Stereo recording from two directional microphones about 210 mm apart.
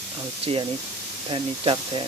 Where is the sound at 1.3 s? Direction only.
25° right (ahead or behind).